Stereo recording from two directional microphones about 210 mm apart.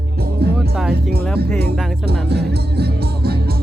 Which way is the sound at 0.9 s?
50° right (ahead or behind).